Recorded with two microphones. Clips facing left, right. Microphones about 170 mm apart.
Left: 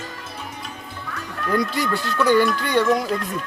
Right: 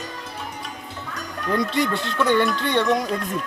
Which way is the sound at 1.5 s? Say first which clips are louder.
Even; 25° right (ahead or behind).